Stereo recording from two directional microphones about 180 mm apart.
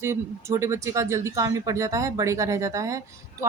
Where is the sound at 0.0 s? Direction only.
15° right (ahead or behind).